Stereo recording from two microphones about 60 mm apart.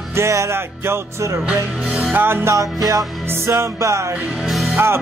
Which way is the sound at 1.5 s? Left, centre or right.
Right.